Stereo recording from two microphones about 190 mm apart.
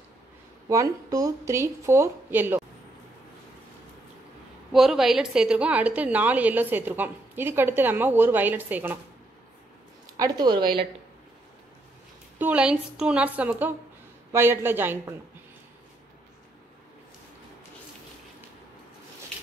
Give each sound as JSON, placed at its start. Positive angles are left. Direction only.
{"t": 0.7, "sound": "a woman's voice", "side_deg": -15}
{"t": 4.7, "sound": "a woman's voice", "side_deg": 0}
{"t": 10.0, "sound": "speech", "side_deg": -20}
{"t": 12.4, "sound": "a woman's voice", "side_deg": -5}